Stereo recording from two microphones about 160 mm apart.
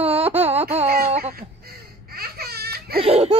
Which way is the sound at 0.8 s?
70° right (ahead or behind).